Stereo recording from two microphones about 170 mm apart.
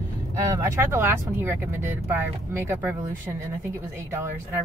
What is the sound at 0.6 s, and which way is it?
Speech, 15° right (ahead or behind).